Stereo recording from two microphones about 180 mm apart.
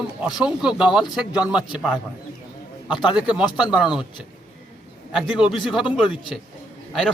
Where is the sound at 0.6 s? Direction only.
25° left (ahead or behind).